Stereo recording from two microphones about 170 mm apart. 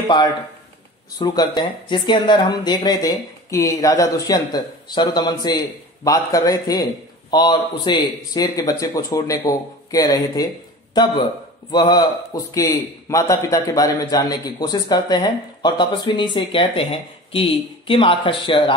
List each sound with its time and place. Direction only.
1.2 s a man's voice: 25° left (ahead or behind)
11.7 s a man's voice: 25° left (ahead or behind)